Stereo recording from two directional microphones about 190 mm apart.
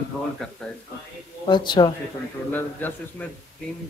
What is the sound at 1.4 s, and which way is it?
Speech, 25° left (ahead or behind).